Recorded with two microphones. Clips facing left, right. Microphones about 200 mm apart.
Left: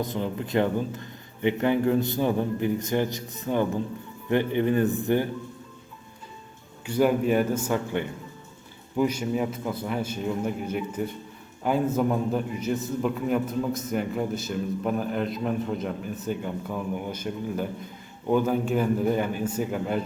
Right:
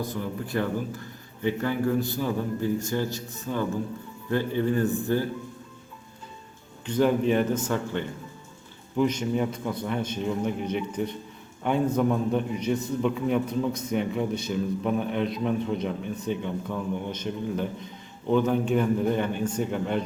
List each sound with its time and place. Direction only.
0.0 s speech: 20° left (ahead or behind)
6.8 s a man's voice: 10° left (ahead or behind)